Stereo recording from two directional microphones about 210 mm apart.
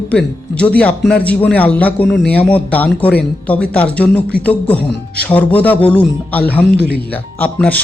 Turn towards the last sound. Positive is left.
turn(degrees=5)  # may be behind; listen again after turning